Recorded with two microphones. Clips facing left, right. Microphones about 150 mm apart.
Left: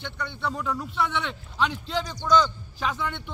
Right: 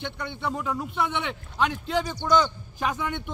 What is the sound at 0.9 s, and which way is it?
Speech, 55° right (ahead or behind).